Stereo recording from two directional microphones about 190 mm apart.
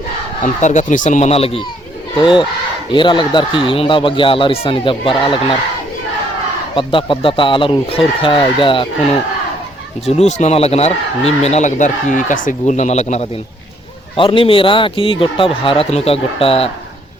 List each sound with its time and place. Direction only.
0.4 s speech: 40° left (ahead or behind)
6.7 s speech: 25° left (ahead or behind)
10.1 s speech: 35° left (ahead or behind)